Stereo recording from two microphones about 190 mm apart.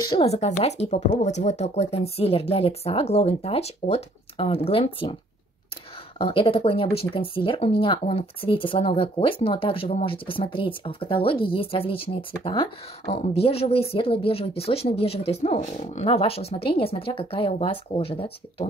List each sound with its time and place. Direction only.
0.2 s a woman's voice: 35° left (ahead or behind)
6.1 s a woman's voice: 30° left (ahead or behind)